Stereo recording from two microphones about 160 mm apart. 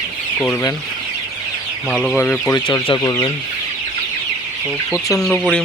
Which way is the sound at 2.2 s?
15° left (ahead or behind).